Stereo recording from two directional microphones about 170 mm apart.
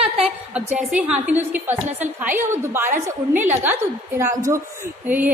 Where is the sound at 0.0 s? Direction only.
Centre (ahead or behind).